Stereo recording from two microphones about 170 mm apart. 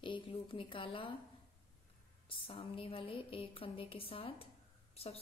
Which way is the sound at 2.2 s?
30° left (ahead or behind).